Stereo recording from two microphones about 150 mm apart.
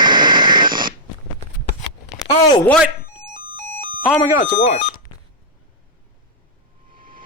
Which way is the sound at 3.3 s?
65° right (ahead or behind).